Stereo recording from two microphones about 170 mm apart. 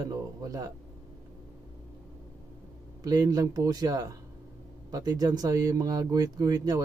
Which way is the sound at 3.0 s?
20° right (ahead or behind).